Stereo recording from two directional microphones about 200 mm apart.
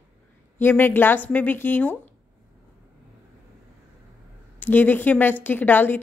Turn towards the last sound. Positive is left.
turn(degrees=10)  # may be behind; listen again after turning